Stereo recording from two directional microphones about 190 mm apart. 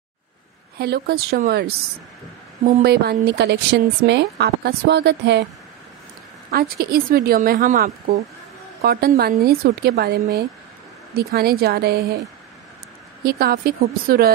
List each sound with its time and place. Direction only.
0.7 s a woman's voice: 60° right (ahead or behind)
6.5 s a woman's voice: 55° right (ahead or behind)
7.6 s speech: 40° right (ahead or behind)
8.8 s a woman's voice: 55° right (ahead or behind)
13.2 s a woman's voice: 50° right (ahead or behind)